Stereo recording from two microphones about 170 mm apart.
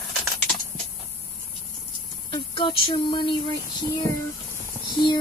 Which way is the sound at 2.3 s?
30° left (ahead or behind).